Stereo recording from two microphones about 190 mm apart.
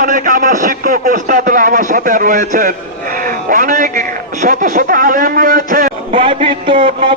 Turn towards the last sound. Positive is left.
turn(degrees=-40)  # may be behind; listen again after turning